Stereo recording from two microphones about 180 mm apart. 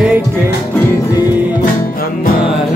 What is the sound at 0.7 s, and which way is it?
Music, 15° left (ahead or behind).